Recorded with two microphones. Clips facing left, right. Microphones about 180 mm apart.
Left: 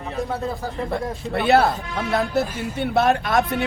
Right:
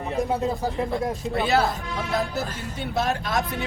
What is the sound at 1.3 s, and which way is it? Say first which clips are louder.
Speech: left 6 dB; 65° left (ahead or behind).